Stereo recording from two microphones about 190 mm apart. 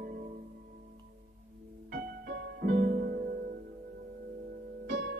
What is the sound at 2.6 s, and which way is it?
Music, 50° right (ahead or behind).